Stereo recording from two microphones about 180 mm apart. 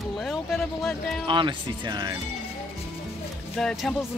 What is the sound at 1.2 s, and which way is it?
Speech, 25° right (ahead or behind).